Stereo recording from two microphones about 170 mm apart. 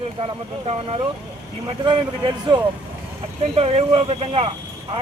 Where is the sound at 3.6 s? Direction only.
35° right (ahead or behind).